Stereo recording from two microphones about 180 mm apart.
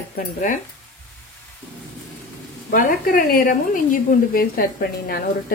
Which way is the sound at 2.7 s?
50° left (ahead or behind).